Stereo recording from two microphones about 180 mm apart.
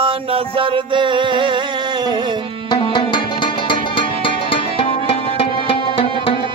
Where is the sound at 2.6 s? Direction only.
25° left (ahead or behind).